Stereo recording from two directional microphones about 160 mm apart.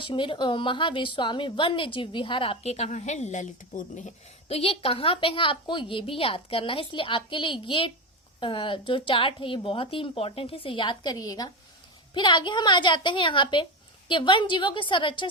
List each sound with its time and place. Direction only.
0.0 s a woman's voice: 30° left (ahead or behind)